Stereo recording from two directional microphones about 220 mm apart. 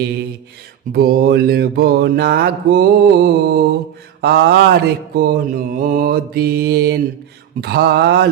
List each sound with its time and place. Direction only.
0.9 s mantra: 45° right (ahead or behind)